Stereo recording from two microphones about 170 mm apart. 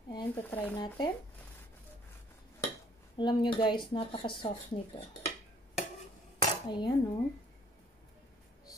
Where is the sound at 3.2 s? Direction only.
30° left (ahead or behind).